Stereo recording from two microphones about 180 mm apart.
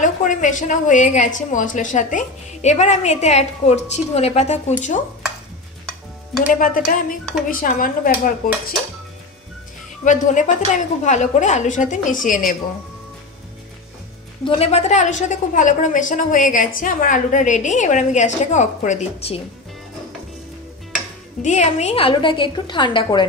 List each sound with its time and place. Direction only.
0.0 s a woman's voice: 45° left (ahead or behind)
6.4 s a woman's voice: 50° left (ahead or behind)
10.0 s a woman's voice: 45° left (ahead or behind)
14.4 s a woman's voice: 35° left (ahead or behind)
21.4 s a woman's voice: 40° left (ahead or behind); by 23.2 s 25° left (ahead or behind)